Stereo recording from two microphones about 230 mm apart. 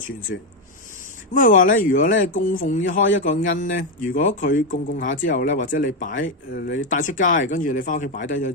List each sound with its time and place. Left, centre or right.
1.3 s a man's voice: left
2.9 s a man's voice: left
3.4 s a man's voice: left